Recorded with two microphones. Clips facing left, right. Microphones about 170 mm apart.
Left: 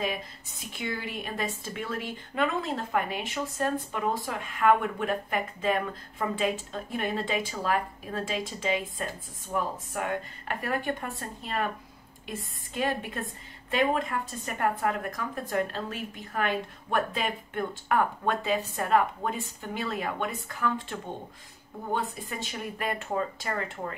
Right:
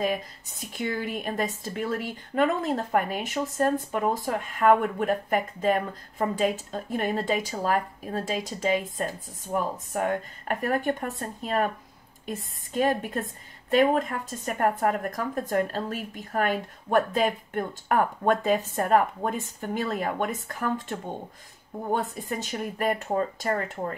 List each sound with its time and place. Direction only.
0.7 s speech: 45° right (ahead or behind)
12.7 s speech: 45° right (ahead or behind)